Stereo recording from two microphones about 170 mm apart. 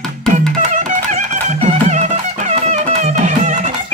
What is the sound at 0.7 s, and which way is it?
Music, 45° right (ahead or behind).